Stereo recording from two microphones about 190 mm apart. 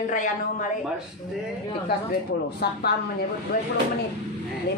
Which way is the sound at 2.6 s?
55° left (ahead or behind).